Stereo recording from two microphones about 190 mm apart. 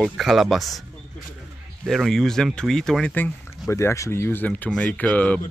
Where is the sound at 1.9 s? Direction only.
Centre (ahead or behind).